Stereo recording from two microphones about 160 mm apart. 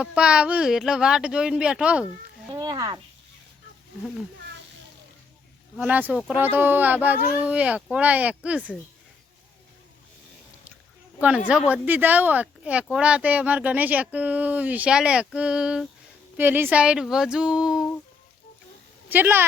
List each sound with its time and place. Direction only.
0.0 s speech: 5° right (ahead or behind)
2.5 s speech: 25° right (ahead or behind)
5.7 s speech: 10° right (ahead or behind)
11.7 s speech: 10° right (ahead or behind)
19.0 s a woman's voice: 10° right (ahead or behind)